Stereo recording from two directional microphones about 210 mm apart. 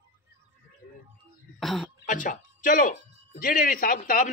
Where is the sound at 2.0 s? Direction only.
40° left (ahead or behind).